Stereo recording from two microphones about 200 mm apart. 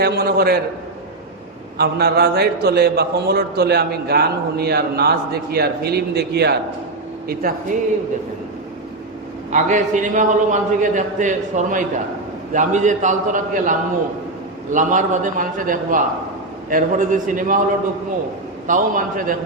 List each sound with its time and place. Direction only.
0.0 s a man's voice: 50° right (ahead or behind)
1.8 s a man's voice: 55° right (ahead or behind)
9.5 s a man's voice: 35° right (ahead or behind)
18.7 s a man's voice: 40° right (ahead or behind)